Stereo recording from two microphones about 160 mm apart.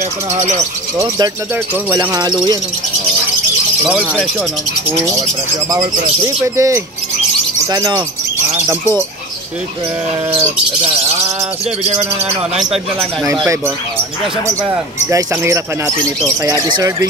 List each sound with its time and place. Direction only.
0.3 s speech: 45° right (ahead or behind)
0.9 s speech: 20° right (ahead or behind)
3.8 s speech: 5° right (ahead or behind)
6.2 s speech: 15° right (ahead or behind)
14.6 s speech: 20° right (ahead or behind)
16.6 s speech: 25° right (ahead or behind)